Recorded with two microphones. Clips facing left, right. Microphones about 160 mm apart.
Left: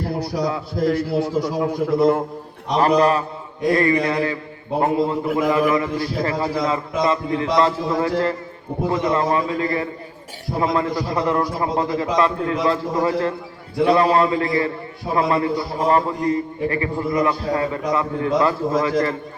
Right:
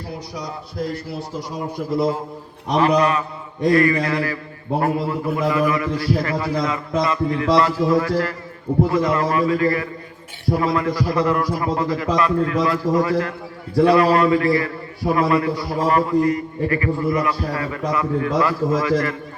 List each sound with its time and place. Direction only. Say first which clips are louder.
0.4 s a man's voice: left 6 dB; 90° left; by 2.2 s 70° left (ahead or behind)
2.7 s a man's voice: left 1 dB; 35° left (ahead or behind)
3.8 s a man's voice: left 2 dB; 25° left (ahead or behind)